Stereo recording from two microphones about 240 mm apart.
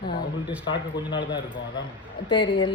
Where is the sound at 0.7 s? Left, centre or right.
Centre.